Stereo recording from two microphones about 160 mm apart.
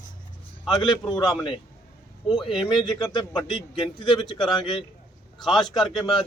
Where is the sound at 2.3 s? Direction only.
Centre (ahead or behind).